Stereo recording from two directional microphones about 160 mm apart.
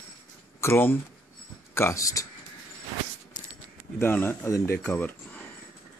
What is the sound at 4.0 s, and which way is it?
Speech, 15° left (ahead or behind).